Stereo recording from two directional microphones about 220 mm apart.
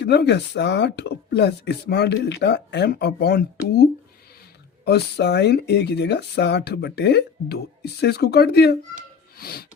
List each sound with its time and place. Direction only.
0.0 s speech: 50° left (ahead or behind)
4.9 s speech: 50° left (ahead or behind)